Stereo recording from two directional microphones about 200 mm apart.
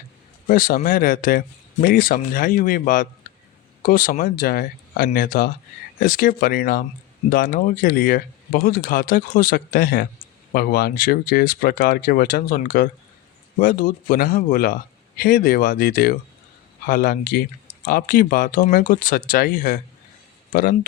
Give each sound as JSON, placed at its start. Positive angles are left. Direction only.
{"t": 0.4, "sound": "speech", "side_deg": 45}